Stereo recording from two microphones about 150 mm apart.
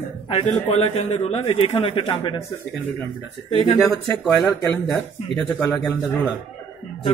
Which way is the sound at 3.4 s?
45° left (ahead or behind).